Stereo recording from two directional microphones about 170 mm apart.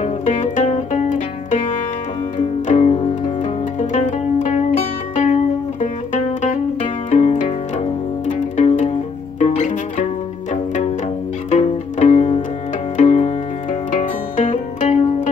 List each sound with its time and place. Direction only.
0.0 s music: 45° left (ahead or behind)
3.8 s pizzicato: 45° left (ahead or behind)
5.1 s music: 45° left (ahead or behind)
9.4 s pizzicato: 40° left (ahead or behind)
10.5 s music: 45° left (ahead or behind)
11.5 s zither: 45° left (ahead or behind)
12.9 s music: 45° left (ahead or behind)